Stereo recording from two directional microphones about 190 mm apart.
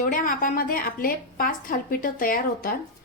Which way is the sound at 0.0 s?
45° left (ahead or behind).